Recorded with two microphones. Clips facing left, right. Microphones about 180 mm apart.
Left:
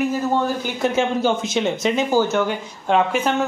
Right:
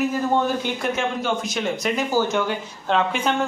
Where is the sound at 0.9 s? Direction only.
25° left (ahead or behind).